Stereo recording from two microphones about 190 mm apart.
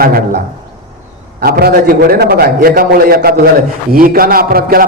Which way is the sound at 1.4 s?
55° right (ahead or behind).